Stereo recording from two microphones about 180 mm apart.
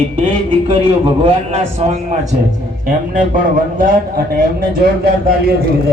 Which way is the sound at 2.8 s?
50° right (ahead or behind).